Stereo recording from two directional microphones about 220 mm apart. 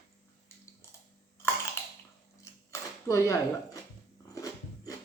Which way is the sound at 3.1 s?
15° left (ahead or behind).